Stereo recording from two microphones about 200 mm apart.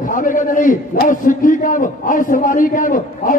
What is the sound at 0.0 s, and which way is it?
A man's voice, 40° left (ahead or behind).